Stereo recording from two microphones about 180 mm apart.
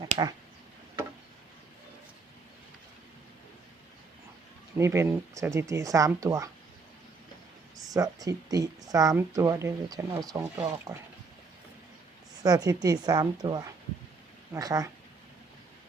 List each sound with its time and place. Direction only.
0.0 s a sound: 20° right (ahead or behind)
4.8 s speech: 15° right (ahead or behind)
7.9 s speech: 20° right (ahead or behind)
12.4 s speech: 20° right (ahead or behind)